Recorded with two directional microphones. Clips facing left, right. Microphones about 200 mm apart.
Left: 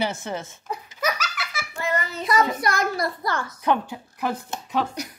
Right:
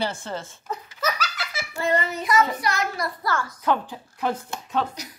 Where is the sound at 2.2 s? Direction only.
35° left (ahead or behind).